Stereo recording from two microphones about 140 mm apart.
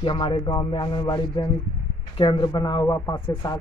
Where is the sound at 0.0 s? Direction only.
35° left (ahead or behind).